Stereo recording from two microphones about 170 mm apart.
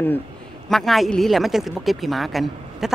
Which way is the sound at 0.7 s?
Centre (ahead or behind).